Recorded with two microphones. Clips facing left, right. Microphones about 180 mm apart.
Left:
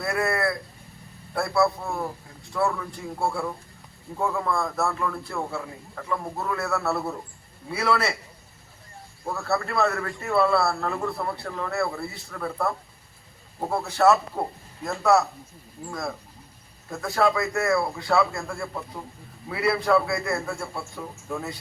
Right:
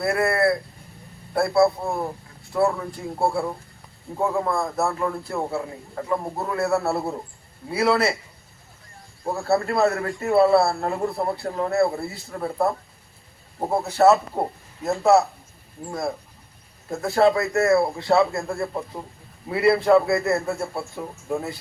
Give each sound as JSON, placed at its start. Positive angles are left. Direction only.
{"t": 0.0, "sound": "a man's voice", "side_deg": -30}
{"t": 3.2, "sound": "a man's voice", "side_deg": -30}
{"t": 9.2, "sound": "a man's voice", "side_deg": -30}